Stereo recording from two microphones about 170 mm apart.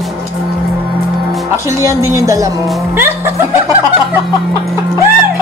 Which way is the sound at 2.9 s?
15° right (ahead or behind).